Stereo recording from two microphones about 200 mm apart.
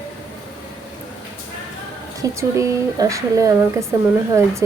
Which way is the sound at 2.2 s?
15° right (ahead or behind).